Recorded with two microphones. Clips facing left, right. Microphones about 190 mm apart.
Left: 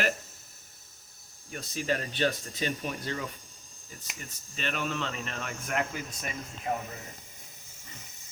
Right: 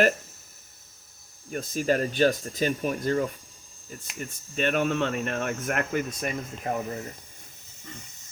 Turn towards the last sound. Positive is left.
turn(degrees=-50)  # may be behind; listen again after turning